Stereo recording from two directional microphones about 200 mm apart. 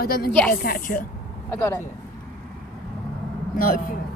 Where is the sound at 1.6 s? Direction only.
15° left (ahead or behind).